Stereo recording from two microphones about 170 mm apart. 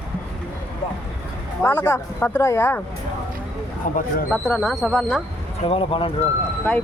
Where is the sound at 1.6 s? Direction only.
15° left (ahead or behind).